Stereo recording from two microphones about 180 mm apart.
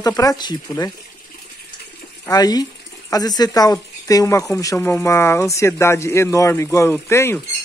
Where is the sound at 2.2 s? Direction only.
20° left (ahead or behind).